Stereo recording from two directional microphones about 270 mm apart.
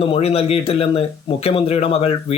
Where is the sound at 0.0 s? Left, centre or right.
Left.